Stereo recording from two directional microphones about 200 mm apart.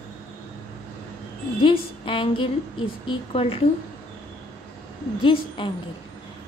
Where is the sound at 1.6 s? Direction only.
25° left (ahead or behind).